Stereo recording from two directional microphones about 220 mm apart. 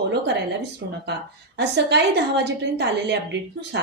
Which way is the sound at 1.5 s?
50° right (ahead or behind).